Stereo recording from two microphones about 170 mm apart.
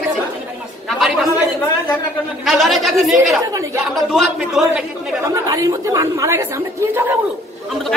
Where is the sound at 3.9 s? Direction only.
Centre (ahead or behind).